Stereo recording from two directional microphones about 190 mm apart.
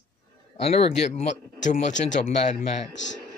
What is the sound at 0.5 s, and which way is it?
Speech, 35° left (ahead or behind).